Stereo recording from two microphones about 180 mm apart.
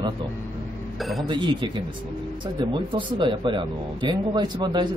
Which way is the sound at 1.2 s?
25° right (ahead or behind).